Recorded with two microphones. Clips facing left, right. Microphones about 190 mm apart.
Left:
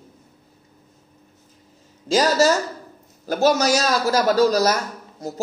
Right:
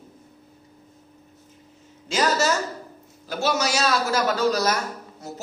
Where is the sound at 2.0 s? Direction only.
35° left (ahead or behind).